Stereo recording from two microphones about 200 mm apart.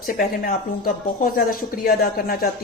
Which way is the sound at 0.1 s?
50° left (ahead or behind).